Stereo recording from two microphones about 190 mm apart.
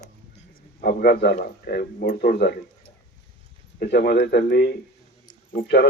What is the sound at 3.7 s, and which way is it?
Speech, 60° left (ahead or behind).